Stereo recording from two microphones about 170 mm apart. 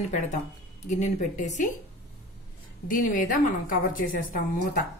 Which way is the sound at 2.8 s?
55° left (ahead or behind).